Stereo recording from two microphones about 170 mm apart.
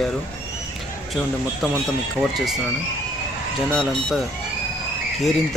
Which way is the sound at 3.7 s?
5° left (ahead or behind).